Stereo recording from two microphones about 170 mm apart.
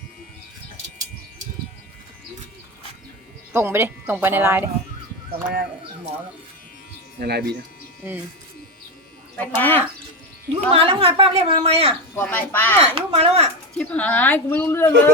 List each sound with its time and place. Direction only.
3.5 s a woman's voice: 15° right (ahead or behind)
7.2 s speech: 70° right (ahead or behind)
9.4 s speech: 10° left (ahead or behind)
10.5 s a woman's voice: 35° right (ahead or behind)
12.1 s speech: 10° left (ahead or behind)
12.8 s a woman's voice: 35° right (ahead or behind)
13.7 s speech: 10° left (ahead or behind)